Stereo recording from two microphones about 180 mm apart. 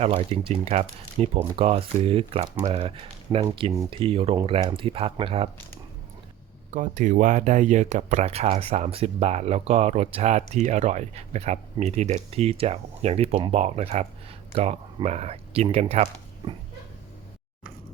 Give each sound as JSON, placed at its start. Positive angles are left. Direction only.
{"t": 0.0, "sound": "speech", "side_deg": -35}
{"t": 6.7, "sound": "speech", "side_deg": -45}